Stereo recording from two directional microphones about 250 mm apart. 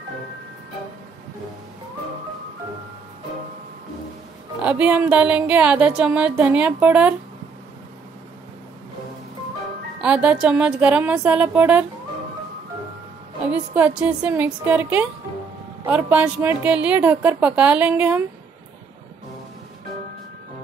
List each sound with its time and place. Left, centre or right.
4.6 s music: centre
10.0 s music: centre
13.5 s a woman's voice: centre
15.8 s music: centre